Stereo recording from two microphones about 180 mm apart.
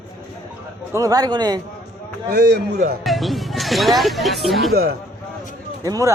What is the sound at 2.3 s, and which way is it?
Speech, 65° right (ahead or behind).